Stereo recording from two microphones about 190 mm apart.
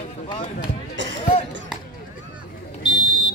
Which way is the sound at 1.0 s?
70° right (ahead or behind).